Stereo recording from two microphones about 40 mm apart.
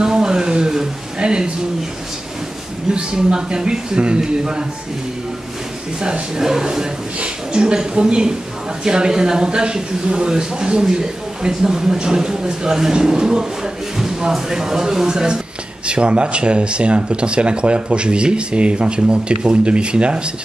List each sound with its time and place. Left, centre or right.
0.0 s a sound: centre
2.9 s speech: right
6.0 s speech: right